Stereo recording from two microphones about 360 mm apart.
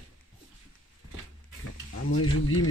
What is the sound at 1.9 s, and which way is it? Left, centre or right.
Speech, left.